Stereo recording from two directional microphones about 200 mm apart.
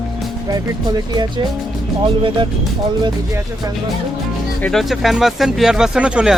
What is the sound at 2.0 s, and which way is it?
Speech, 25° right (ahead or behind).